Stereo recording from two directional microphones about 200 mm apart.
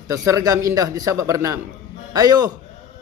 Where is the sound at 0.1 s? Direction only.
15° right (ahead or behind).